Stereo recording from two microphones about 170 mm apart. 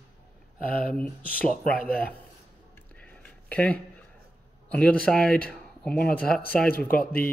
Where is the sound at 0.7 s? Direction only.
55° left (ahead or behind).